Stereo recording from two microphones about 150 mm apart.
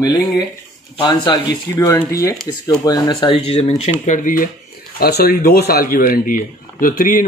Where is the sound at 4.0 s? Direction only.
60° left (ahead or behind).